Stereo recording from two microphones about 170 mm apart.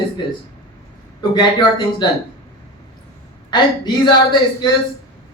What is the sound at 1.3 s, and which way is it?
Speech, 25° left (ahead or behind).